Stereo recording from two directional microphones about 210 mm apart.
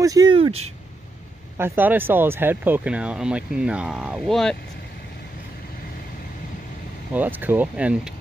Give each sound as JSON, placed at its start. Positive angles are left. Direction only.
{"t": 0.0, "sound": "speech", "side_deg": -15}
{"t": 1.6, "sound": "speech", "side_deg": -10}
{"t": 7.2, "sound": "speech", "side_deg": -10}